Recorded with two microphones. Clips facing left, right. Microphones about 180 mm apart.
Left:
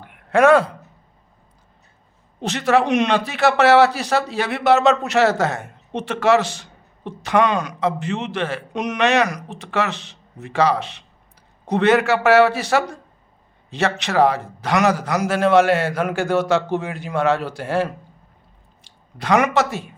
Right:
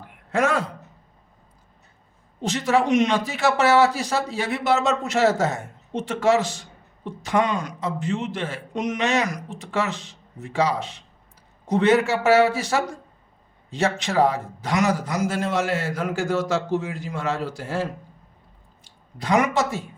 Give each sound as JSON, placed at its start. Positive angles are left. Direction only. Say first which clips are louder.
{"t": 0.0, "sound": "a sound", "louder": "left 8 dB", "side_deg": 65}
{"t": 2.4, "sound": "a man's voice", "louder": "left 3 dB", "side_deg": 65}
{"t": 18.9, "sound": "speech", "louder": "left 4 dB", "side_deg": 75}